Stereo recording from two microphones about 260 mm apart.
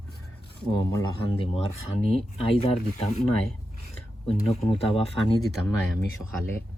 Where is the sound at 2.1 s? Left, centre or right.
Left.